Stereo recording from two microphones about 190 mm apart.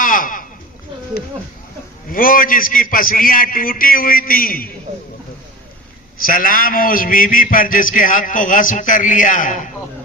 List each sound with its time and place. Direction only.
0.0 s a sound: 45° left (ahead or behind)
2.0 s a man's voice: 50° left (ahead or behind)
6.2 s a man's voice: 50° left (ahead or behind)